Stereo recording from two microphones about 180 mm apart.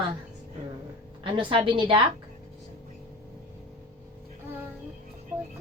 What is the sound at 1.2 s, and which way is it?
Speech, 30° right (ahead or behind).